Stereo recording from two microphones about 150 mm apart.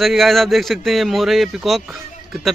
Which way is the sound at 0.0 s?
Centre (ahead or behind).